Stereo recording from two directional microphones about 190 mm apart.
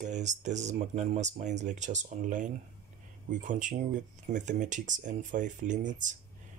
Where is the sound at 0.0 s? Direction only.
40° right (ahead or behind).